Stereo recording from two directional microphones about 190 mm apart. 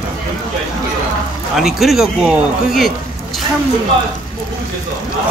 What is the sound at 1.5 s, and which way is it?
A man's voice, centre (ahead or behind).